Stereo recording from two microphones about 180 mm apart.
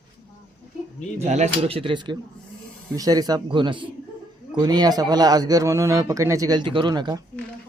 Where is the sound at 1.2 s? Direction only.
40° right (ahead or behind); by 7.2 s 25° right (ahead or behind).